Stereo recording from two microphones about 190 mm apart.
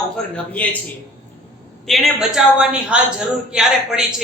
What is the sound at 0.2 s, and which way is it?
Speech, 5° left (ahead or behind).